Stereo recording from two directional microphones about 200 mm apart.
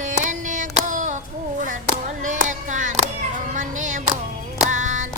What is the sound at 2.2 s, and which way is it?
Music, 40° right (ahead or behind).